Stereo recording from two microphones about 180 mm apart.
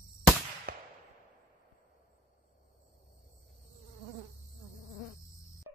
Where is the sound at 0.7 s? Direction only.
60° right (ahead or behind).